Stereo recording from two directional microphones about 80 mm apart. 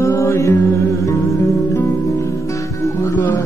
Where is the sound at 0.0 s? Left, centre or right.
Left.